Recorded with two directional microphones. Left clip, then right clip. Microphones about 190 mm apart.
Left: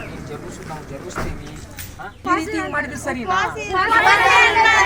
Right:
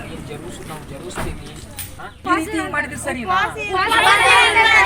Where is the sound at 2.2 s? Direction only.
5° left (ahead or behind).